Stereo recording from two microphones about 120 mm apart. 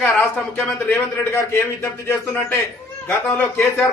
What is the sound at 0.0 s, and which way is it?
A man's voice, 10° left (ahead or behind).